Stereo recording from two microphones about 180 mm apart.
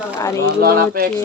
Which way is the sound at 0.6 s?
55° right (ahead or behind).